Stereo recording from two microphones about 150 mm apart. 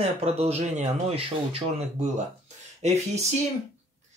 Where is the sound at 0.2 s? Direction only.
45° right (ahead or behind).